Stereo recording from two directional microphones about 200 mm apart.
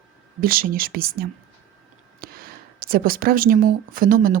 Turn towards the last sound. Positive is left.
turn(degrees=-45)  # may be behind; listen again after turning